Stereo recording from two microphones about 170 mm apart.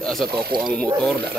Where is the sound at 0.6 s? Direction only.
5° left (ahead or behind).